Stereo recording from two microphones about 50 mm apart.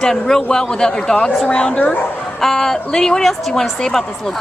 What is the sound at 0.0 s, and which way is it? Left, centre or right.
A woman's voice, centre.